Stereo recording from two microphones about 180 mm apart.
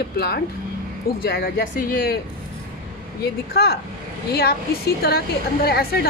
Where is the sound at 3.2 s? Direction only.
60° left (ahead or behind).